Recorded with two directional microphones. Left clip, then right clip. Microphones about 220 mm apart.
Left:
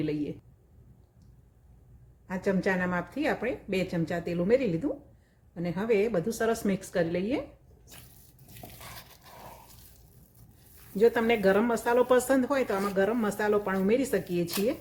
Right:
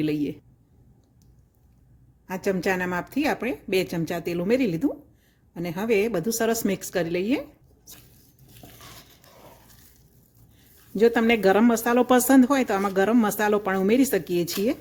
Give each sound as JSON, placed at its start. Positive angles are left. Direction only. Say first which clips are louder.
{"t": 0.0, "sound": "speech", "louder": "right 6 dB", "side_deg": -45}
{"t": 2.2, "sound": "speech", "louder": "right 3 dB", "side_deg": -45}
{"t": 8.6, "sound": "a sound", "louder": "left 1 dB", "side_deg": 15}
{"t": 10.9, "sound": "speech", "louder": "right 4 dB", "side_deg": -45}